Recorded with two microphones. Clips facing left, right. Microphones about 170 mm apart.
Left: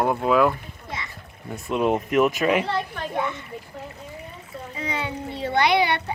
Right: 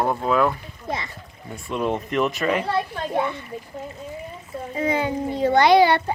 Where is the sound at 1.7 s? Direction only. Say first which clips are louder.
Left 3 dB; 5° left (ahead or behind).